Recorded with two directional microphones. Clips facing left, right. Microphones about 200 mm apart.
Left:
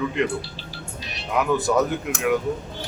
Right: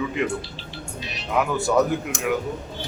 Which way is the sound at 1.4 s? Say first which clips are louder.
Even; centre (ahead or behind).